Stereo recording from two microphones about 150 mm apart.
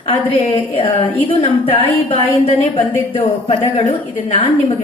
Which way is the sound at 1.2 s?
40° left (ahead or behind).